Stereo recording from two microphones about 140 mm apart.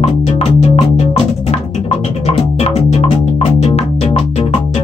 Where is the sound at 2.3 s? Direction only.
50° left (ahead or behind).